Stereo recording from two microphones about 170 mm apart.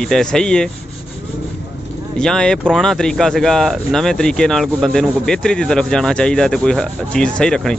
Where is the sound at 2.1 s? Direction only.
5° left (ahead or behind).